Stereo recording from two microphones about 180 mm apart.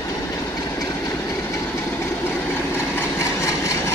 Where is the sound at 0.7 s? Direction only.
20° left (ahead or behind).